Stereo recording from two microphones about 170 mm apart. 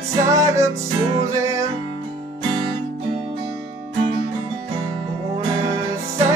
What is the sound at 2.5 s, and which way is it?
Music, 30° right (ahead or behind).